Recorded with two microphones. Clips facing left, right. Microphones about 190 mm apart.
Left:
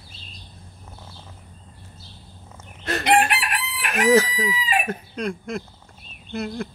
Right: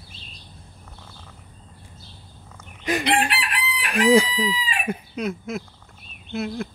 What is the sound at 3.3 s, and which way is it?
Chicken, 45° left (ahead or behind).